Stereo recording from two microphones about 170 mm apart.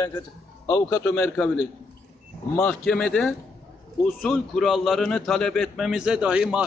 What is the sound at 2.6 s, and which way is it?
A man's voice, 5° left (ahead or behind).